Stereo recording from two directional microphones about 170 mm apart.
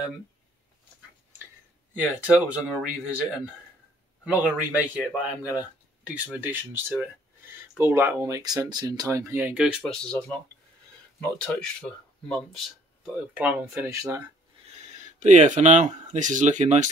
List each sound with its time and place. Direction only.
2.0 s speech: 10° right (ahead or behind)
11.1 s speech: 5° left (ahead or behind); by 14.2 s 20° right (ahead or behind)
15.0 s speech: 45° right (ahead or behind)